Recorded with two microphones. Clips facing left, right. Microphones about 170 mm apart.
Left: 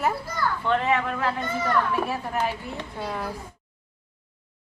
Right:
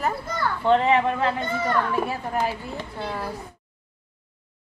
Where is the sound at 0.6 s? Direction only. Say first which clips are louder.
Right 6 dB; 30° right (ahead or behind).